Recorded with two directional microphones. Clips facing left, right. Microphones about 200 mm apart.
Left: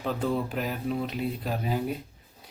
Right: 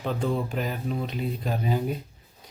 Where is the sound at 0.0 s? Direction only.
Centre (ahead or behind).